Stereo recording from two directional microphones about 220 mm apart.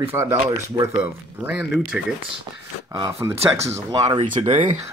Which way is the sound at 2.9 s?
15° right (ahead or behind).